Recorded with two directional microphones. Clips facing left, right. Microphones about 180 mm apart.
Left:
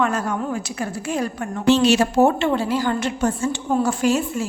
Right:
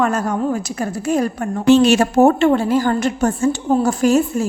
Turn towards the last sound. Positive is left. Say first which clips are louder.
# right 5 dB
turn(degrees=-45)  # may be behind; listen again after turning